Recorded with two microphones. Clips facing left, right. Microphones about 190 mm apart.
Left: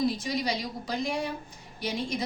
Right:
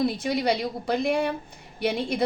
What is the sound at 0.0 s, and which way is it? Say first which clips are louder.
A woman's voice: right 4 dB; 60° right (ahead or behind).